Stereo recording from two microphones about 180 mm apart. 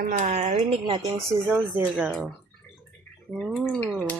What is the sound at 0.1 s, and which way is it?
Speech, 40° right (ahead or behind).